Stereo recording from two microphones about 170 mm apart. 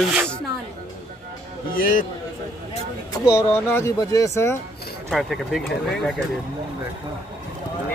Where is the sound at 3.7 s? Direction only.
15° left (ahead or behind).